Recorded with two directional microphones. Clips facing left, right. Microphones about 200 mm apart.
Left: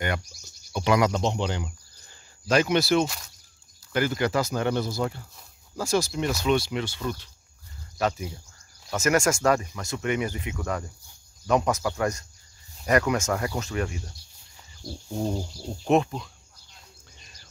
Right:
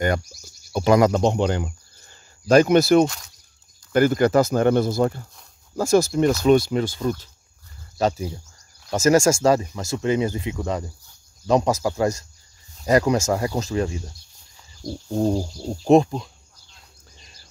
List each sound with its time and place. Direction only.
0.7 s speech: 40° right (ahead or behind)
8.0 s wild animals: 30° right (ahead or behind)
8.9 s speech: 30° right (ahead or behind)
14.8 s wild animals: 35° right (ahead or behind)